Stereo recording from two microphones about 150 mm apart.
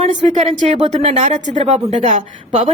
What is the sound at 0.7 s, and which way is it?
A woman's voice, 50° right (ahead or behind).